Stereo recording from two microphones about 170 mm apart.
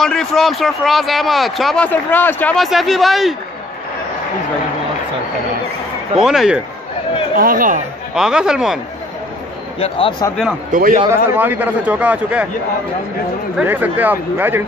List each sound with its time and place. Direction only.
0.0 s a man's voice: centre (ahead or behind)
1.9 s a man's voice: 10° left (ahead or behind)
6.1 s a man's voice: centre (ahead or behind)
7.3 s speech: 55° right (ahead or behind)
8.1 s a man's voice: 5° right (ahead or behind)
9.8 s speech: 35° left (ahead or behind)
10.7 s a man's voice: 55° right (ahead or behind)
11.3 s a man's voice: 10° right (ahead or behind)
13.6 s a man's voice: 10° right (ahead or behind)